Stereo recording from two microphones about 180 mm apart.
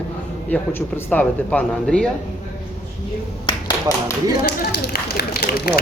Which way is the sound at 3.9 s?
20° left (ahead or behind).